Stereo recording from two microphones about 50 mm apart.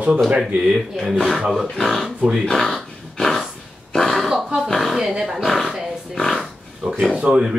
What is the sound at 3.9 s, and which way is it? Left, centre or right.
Throat clearing, centre.